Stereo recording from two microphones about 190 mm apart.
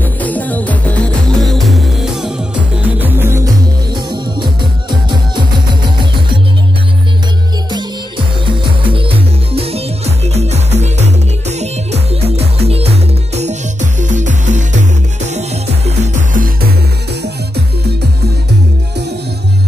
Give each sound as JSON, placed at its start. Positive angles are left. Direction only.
{"t": 0.0, "sound": "music", "side_deg": 10}
{"t": 8.5, "sound": "music", "side_deg": -25}